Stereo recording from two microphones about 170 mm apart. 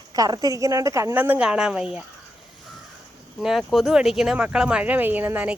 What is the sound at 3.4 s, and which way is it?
Speech, centre (ahead or behind).